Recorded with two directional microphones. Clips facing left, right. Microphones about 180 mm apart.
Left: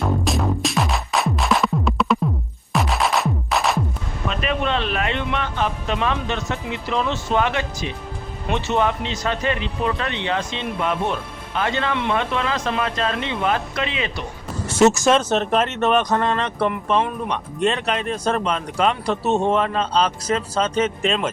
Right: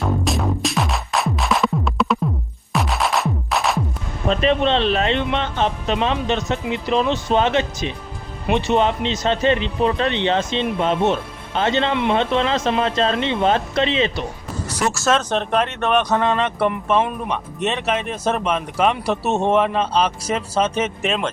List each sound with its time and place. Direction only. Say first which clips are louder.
0.0 s music: even; centre (ahead or behind)
4.3 s speech: right 6 dB; 30° right (ahead or behind)
14.7 s speech: left 5 dB; 25° left (ahead or behind); by 21.2 s 5° right (ahead or behind)